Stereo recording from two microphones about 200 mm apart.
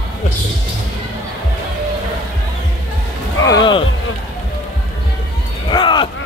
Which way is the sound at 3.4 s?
20° left (ahead or behind).